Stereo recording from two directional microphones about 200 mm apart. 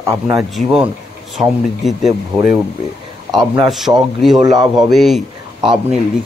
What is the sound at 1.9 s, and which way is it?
A man's voice, centre (ahead or behind).